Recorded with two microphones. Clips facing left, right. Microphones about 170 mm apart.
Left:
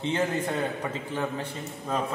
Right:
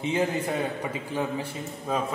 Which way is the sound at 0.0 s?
10° right (ahead or behind).